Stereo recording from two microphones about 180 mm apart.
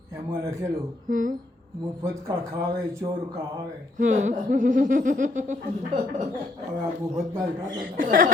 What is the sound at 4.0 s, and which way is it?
Speech, 40° right (ahead or behind).